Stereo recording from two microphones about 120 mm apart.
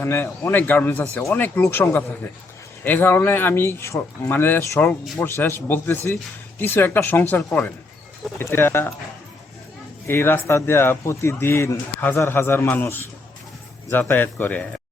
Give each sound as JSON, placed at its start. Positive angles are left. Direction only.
{"t": 0.0, "sound": "speech", "side_deg": 20}
{"t": 10.1, "sound": "speech", "side_deg": 20}